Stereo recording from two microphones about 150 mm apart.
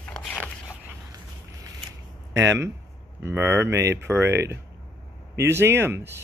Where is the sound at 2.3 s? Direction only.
20° right (ahead or behind).